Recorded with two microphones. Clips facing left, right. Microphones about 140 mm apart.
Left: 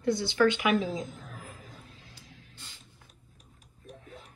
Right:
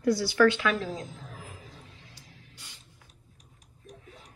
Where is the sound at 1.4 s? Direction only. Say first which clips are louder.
Even; 45° left (ahead or behind).